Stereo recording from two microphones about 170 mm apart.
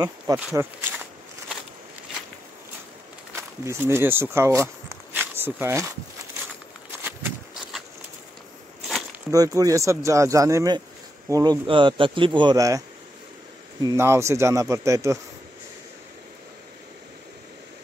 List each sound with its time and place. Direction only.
0.3 s speech: 25° right (ahead or behind)
3.3 s speech: 15° right (ahead or behind)
7.0 s a sound: 10° right (ahead or behind)
9.3 s speech: 20° right (ahead or behind)